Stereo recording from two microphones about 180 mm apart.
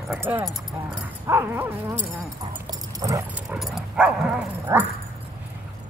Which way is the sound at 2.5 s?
20° right (ahead or behind).